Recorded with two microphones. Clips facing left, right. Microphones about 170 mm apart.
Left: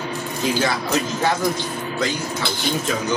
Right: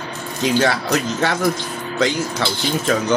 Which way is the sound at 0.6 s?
70° right (ahead or behind).